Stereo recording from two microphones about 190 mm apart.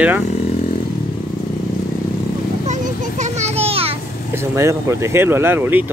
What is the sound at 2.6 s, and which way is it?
Children playing, 40° right (ahead or behind).